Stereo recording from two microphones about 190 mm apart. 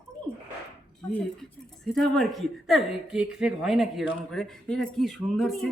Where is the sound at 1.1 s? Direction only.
5° left (ahead or behind).